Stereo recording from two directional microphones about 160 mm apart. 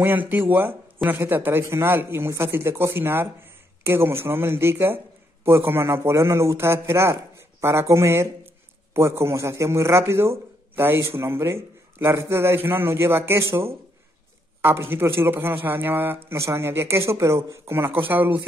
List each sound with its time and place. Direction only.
0.0 s a man's voice: 10° right (ahead or behind)